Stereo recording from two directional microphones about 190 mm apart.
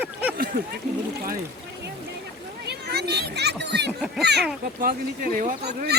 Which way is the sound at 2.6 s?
60° right (ahead or behind).